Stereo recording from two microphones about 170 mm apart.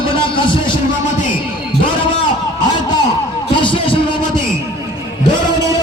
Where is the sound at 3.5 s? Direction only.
30° left (ahead or behind).